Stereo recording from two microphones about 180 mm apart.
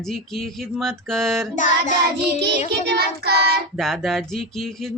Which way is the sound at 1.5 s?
45° left (ahead or behind).